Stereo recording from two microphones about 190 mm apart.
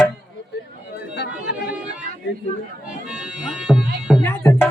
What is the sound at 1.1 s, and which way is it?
Chatter, 60° left (ahead or behind).